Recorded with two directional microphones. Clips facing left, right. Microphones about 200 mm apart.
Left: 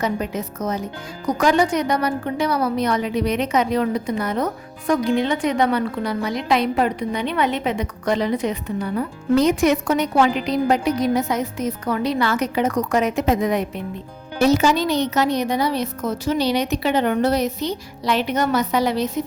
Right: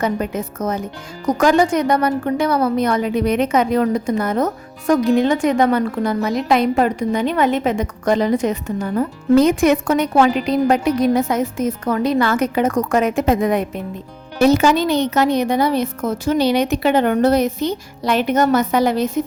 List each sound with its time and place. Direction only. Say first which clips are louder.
0.0 s a woman's voice: right 3 dB; 50° right (ahead or behind)